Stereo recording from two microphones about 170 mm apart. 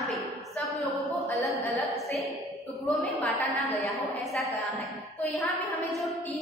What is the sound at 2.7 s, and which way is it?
A woman's voice, 5° left (ahead or behind).